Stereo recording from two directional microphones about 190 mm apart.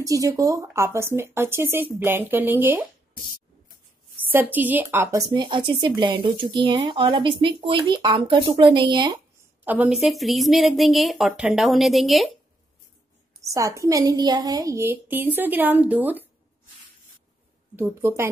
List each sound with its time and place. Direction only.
0.0 s a woman's voice: 15° right (ahead or behind)
4.3 s a woman's voice: 10° right (ahead or behind)
5.3 s speech: 25° right (ahead or behind)
9.7 s a woman's voice: 5° right (ahead or behind)
13.4 s a woman's voice: 15° right (ahead or behind)
17.7 s a woman's voice: 10° right (ahead or behind)